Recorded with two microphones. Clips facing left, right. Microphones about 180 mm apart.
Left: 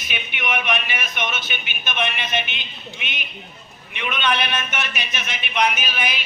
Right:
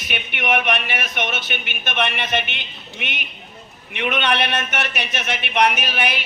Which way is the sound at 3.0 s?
60° right (ahead or behind).